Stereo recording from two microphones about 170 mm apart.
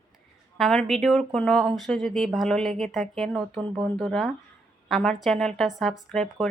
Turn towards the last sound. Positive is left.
turn(degrees=0)  # may be behind; listen again after turning